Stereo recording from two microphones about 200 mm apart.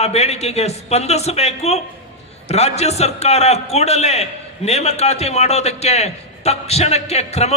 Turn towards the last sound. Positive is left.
turn(degrees=30)  # may be behind; listen again after turning